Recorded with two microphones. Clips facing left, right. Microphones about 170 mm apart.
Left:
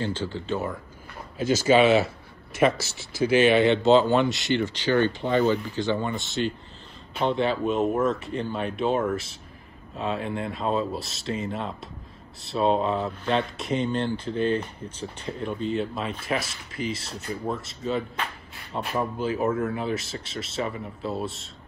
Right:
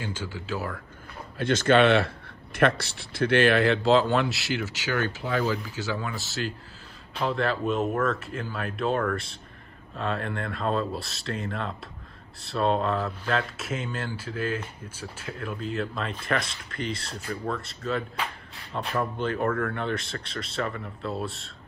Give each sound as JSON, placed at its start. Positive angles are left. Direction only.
{"t": 0.0, "sound": "speech", "side_deg": -10}
{"t": 18.7, "sound": "speech", "side_deg": 30}
{"t": 19.1, "sound": "speech", "side_deg": 5}